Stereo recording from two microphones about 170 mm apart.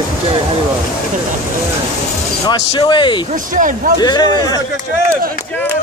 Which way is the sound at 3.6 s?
50° right (ahead or behind).